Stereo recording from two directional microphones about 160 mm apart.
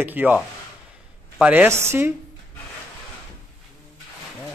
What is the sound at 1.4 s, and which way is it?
Speech, 10° right (ahead or behind).